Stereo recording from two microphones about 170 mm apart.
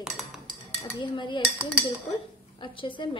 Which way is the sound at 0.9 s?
25° left (ahead or behind).